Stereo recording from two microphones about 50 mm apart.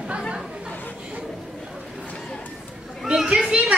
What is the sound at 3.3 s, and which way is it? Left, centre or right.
Children playing, centre.